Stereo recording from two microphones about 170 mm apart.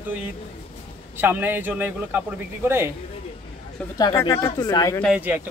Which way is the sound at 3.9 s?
25° left (ahead or behind).